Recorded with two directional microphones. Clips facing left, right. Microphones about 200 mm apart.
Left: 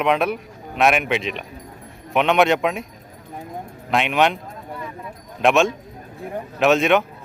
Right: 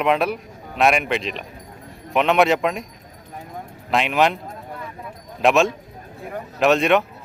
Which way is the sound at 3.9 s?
Centre (ahead or behind).